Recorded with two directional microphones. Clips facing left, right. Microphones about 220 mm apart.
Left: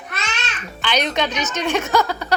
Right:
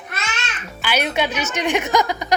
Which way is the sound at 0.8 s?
10° right (ahead or behind).